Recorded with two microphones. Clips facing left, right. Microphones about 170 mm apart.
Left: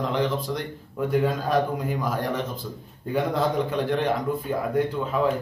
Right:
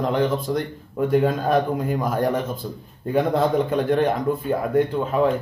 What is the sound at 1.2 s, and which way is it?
A man's voice, 50° right (ahead or behind).